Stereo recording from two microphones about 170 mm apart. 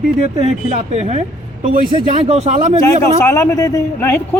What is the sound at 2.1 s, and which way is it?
Speech, 40° right (ahead or behind).